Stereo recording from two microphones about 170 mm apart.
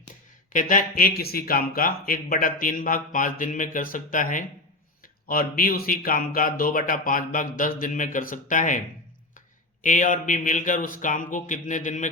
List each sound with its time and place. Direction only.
0.5 s speech: 50° left (ahead or behind)
9.8 s speech: 50° left (ahead or behind)